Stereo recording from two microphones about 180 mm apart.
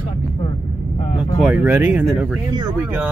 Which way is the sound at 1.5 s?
5° right (ahead or behind).